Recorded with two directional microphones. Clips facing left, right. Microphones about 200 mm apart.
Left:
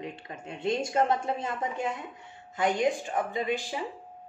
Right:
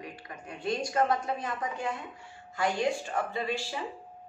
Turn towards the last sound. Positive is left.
turn(degrees=20)  # may be behind; listen again after turning